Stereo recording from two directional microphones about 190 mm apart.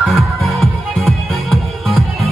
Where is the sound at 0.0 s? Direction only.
Centre (ahead or behind).